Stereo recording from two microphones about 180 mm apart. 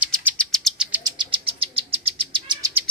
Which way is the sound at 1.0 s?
30° right (ahead or behind).